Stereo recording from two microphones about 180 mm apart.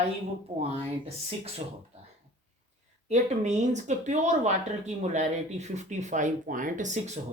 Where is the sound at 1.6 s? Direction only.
35° right (ahead or behind).